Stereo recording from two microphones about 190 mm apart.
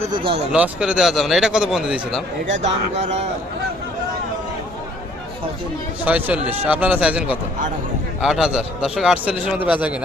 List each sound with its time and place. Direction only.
0.1 s speech: 25° right (ahead or behind)
0.5 s a man's voice: 5° right (ahead or behind)
2.6 s speech: 35° right (ahead or behind)
6.1 s a man's voice: 10° right (ahead or behind)